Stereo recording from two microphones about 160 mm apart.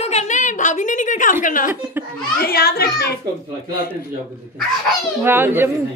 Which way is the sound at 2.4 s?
70° left (ahead or behind).